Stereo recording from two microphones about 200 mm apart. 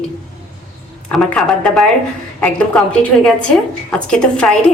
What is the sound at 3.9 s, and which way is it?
Speech, 5° left (ahead or behind).